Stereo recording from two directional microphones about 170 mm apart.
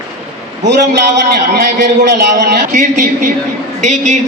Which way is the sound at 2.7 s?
45° right (ahead or behind).